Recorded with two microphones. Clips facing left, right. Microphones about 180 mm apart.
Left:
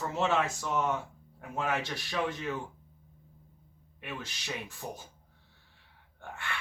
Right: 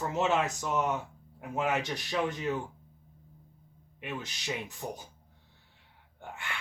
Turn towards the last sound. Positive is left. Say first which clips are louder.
# left 1 dB
turn(degrees=-15)  # may be behind; listen again after turning